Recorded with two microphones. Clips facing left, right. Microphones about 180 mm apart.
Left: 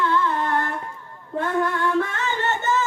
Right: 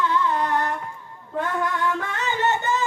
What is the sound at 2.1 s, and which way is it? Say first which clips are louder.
Music: right 2 dB; 15° right (ahead or behind).